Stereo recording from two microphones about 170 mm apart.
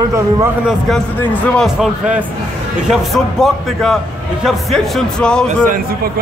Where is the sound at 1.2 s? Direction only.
10° left (ahead or behind).